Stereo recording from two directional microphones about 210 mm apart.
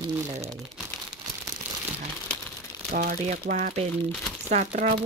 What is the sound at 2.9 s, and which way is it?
Speech, 40° right (ahead or behind).